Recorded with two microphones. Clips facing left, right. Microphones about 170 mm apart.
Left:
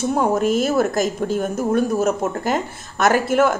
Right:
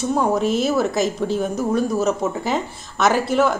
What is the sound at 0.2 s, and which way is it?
Speech, centre (ahead or behind).